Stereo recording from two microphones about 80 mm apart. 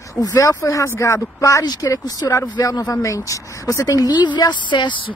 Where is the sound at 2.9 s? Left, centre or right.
Left.